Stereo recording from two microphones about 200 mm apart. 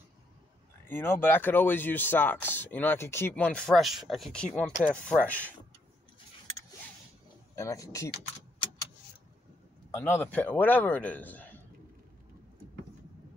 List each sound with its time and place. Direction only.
0.8 s speech: 10° left (ahead or behind)
7.5 s speech: 15° left (ahead or behind)
9.8 s speech: 10° left (ahead or behind)